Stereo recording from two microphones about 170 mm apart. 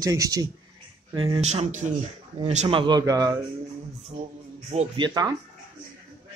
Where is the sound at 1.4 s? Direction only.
40° right (ahead or behind).